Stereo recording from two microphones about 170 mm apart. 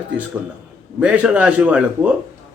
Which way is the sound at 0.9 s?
10° right (ahead or behind).